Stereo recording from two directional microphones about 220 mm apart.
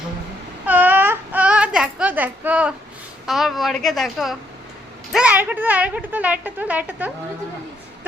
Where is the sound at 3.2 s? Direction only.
Centre (ahead or behind).